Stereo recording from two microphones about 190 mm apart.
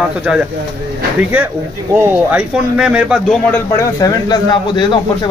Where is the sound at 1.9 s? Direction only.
10° right (ahead or behind).